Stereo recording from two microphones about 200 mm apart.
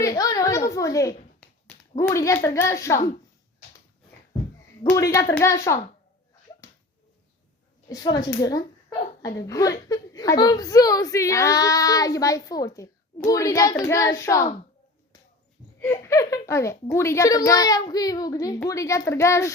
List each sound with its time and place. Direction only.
0.0 s a sound: 20° left (ahead or behind)
1.4 s a child's voice: 5° left (ahead or behind)
4.8 s a woman's voice: 15° left (ahead or behind)
7.9 s a woman's voice: 20° left (ahead or behind)
15.8 s a woman's voice: 15° left (ahead or behind)